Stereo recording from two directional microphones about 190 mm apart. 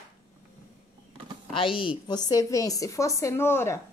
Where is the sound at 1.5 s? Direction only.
25° left (ahead or behind); by 3.7 s 10° left (ahead or behind).